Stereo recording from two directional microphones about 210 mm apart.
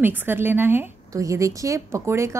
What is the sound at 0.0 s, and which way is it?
A woman's voice, 10° right (ahead or behind).